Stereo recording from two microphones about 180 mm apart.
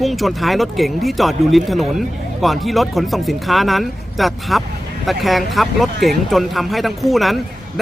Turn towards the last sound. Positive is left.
turn(degrees=0)  # may be behind; listen again after turning